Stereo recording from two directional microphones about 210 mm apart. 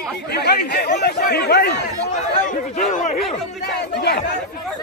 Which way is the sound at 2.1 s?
35° left (ahead or behind).